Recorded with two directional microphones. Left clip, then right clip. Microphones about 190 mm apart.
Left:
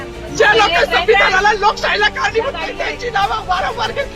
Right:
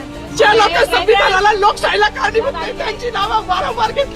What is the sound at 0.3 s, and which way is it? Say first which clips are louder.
Speech: right 1 dB; 30° right (ahead or behind).